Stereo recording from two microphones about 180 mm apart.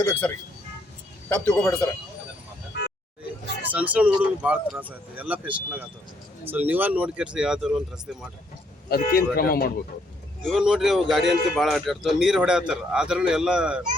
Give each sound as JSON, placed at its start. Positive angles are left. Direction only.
{"t": 0.0, "sound": "speech", "side_deg": 10}
{"t": 1.3, "sound": "speech", "side_deg": 10}
{"t": 3.6, "sound": "speech", "side_deg": -10}
{"t": 8.9, "sound": "speech", "side_deg": 55}
{"t": 10.4, "sound": "speech", "side_deg": 0}